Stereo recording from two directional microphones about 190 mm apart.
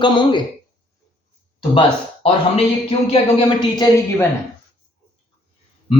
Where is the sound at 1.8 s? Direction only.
30° left (ahead or behind).